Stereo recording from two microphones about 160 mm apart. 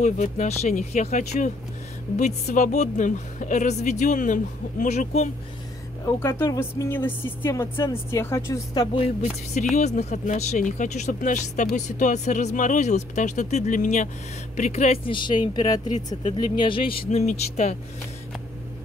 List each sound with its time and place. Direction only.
0.0 s speech: 45° left (ahead or behind)
6.0 s speech: 15° left (ahead or behind)
8.9 s speech: 40° left (ahead or behind)
17.1 s speech: 45° left (ahead or behind)